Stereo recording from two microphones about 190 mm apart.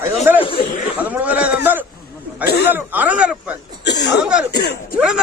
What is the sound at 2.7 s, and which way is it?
Speech, 10° right (ahead or behind).